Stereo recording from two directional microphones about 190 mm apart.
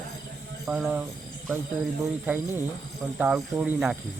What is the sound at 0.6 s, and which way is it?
Speech, 10° right (ahead or behind).